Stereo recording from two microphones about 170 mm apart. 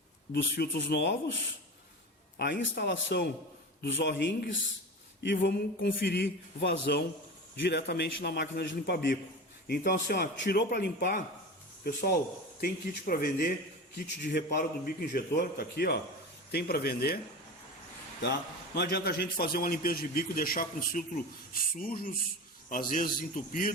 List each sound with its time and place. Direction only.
0.3 s speech: 80° left
2.4 s a man's voice: 85° left
3.8 s a man's voice: 90° left
9.6 s a man's voice: 65° left (ahead or behind)
18.2 s a man's voice: 75° left (ahead or behind); by 23.7 s 55° left (ahead or behind)